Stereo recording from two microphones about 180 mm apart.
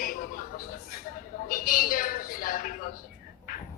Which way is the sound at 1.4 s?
50° left (ahead or behind).